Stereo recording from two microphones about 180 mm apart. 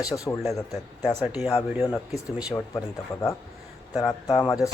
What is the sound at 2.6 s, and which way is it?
Speech, 15° left (ahead or behind).